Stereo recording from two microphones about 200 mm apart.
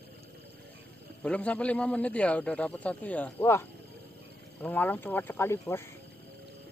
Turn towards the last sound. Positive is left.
turn(degrees=15)  # may be behind; listen again after turning